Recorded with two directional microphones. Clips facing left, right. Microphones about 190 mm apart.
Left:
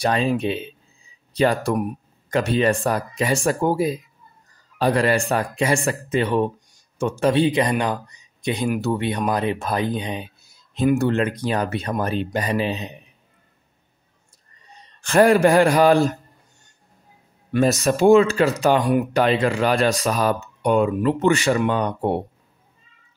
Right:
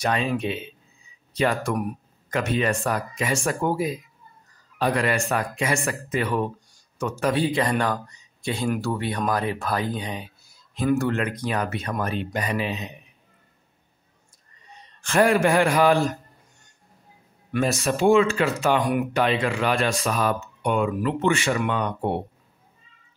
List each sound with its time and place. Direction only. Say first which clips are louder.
0.0 s speech: left 4 dB; 35° left (ahead or behind)
15.0 s speech: left 4 dB; 35° left (ahead or behind)
17.5 s speech: left 5 dB; 40° left (ahead or behind)